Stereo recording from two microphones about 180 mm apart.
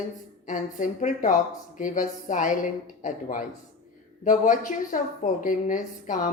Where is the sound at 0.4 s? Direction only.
45° left (ahead or behind).